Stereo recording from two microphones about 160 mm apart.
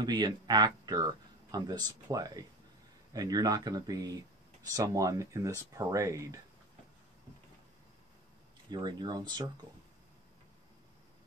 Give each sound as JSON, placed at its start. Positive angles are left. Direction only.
{"t": 0.0, "sound": "speech", "side_deg": -25}
{"t": 8.6, "sound": "speech", "side_deg": -25}